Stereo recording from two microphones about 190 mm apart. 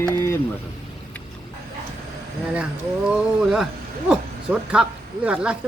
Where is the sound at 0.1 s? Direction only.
15° left (ahead or behind).